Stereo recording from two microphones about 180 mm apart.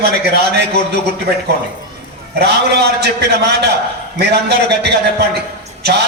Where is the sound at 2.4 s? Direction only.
65° right (ahead or behind).